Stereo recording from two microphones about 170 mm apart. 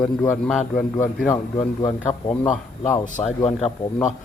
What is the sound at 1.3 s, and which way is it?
Speech, 25° left (ahead or behind).